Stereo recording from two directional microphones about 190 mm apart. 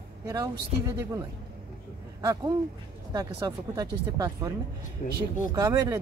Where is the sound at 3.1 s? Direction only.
20° right (ahead or behind).